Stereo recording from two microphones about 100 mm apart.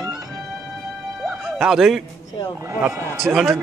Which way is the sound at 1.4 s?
5° right (ahead or behind).